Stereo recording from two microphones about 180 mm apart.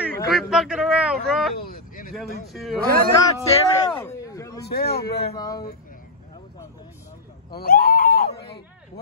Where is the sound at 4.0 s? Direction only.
15° left (ahead or behind).